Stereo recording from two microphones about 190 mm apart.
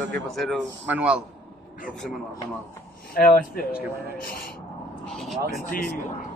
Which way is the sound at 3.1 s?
50° left (ahead or behind).